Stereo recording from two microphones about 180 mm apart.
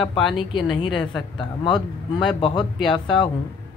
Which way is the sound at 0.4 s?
25° left (ahead or behind).